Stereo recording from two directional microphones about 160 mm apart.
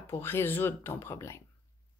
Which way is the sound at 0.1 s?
15° left (ahead or behind).